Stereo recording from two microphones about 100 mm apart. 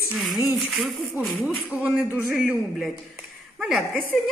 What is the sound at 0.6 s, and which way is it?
A woman's voice, centre (ahead or behind).